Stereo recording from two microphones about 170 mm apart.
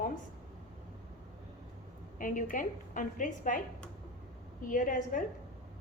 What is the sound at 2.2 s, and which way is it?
A woman's voice, 50° left (ahead or behind).